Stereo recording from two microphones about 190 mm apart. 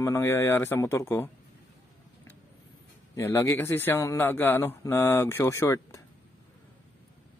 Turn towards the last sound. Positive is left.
turn(degrees=15)  # may be behind; listen again after turning